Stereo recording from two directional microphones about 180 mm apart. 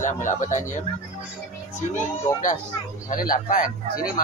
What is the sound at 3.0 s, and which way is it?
Speech, 50° left (ahead or behind).